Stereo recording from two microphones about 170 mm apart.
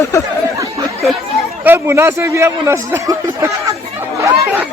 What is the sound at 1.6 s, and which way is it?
A man's voice, 15° right (ahead or behind).